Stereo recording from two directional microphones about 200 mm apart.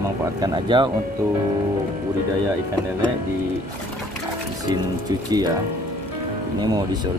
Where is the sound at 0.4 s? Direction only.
20° right (ahead or behind).